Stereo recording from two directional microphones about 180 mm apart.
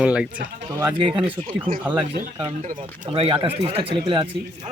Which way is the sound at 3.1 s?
30° right (ahead or behind).